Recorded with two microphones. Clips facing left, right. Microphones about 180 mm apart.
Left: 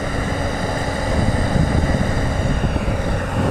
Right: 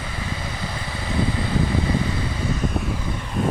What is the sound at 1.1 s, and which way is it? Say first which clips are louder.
Vehicle: left 1 dB; 45° left (ahead or behind).